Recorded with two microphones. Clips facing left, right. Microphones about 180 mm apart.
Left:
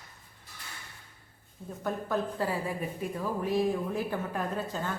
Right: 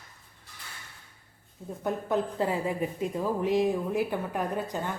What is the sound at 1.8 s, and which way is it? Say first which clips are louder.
A woman's voice: right 3 dB; 20° right (ahead or behind).